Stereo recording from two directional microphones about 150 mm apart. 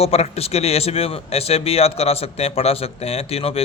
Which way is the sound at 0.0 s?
45° left (ahead or behind).